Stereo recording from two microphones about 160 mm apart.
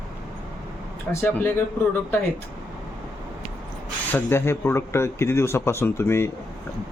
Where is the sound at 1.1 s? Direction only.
15° left (ahead or behind).